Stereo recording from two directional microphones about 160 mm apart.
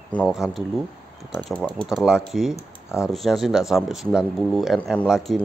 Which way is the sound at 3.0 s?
Centre (ahead or behind).